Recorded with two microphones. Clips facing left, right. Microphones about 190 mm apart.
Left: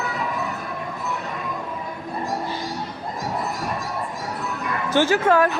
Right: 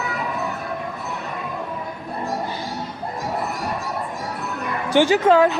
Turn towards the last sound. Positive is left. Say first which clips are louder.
# right 3 dB
turn(degrees=-20)  # may be behind; listen again after turning